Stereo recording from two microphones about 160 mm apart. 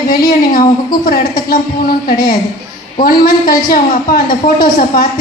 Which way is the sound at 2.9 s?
65° left (ahead or behind).